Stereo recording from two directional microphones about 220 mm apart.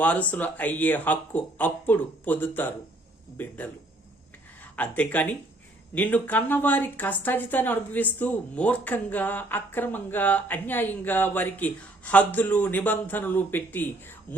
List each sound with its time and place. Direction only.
0.0 s a woman's voice: 5° left (ahead or behind)
4.8 s a woman's voice: 5° left (ahead or behind)